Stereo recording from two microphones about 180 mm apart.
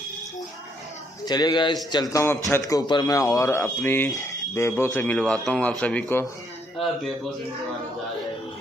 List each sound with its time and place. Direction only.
1.2 s speech: 25° left (ahead or behind)